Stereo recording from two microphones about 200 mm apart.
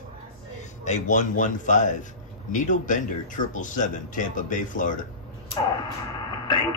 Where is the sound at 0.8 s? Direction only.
35° left (ahead or behind).